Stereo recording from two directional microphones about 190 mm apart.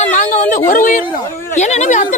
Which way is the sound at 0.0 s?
40° left (ahead or behind).